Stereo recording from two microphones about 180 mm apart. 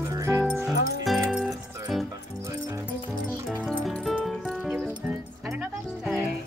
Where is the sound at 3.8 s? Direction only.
Centre (ahead or behind).